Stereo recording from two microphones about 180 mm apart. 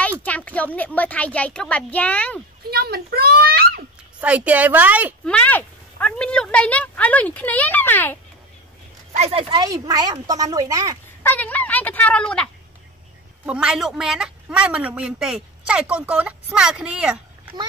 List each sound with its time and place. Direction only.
0.0 s a sound: 10° left (ahead or behind)
0.7 s speech: 10° left (ahead or behind)
2.7 s a child's voice: 60° right (ahead or behind)
4.2 s a woman's voice: 5° right (ahead or behind)
5.2 s speech: 5° left (ahead or behind)
9.1 s speech: 35° right (ahead or behind)
11.2 s speech: 10° left (ahead or behind)
13.5 s a woman's voice: 5° right (ahead or behind)